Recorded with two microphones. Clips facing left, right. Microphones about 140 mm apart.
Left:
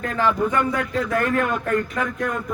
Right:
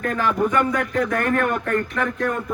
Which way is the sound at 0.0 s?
55° right (ahead or behind).